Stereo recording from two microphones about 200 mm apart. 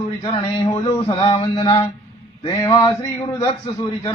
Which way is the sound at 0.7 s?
25° left (ahead or behind).